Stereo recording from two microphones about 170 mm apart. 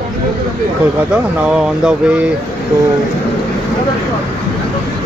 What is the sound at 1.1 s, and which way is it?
Speech, 5° right (ahead or behind).